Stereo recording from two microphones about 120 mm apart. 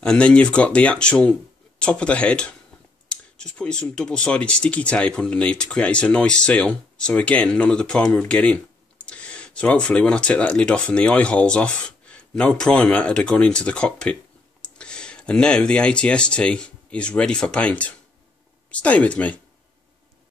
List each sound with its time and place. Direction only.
0.0 s speech: 5° left (ahead or behind)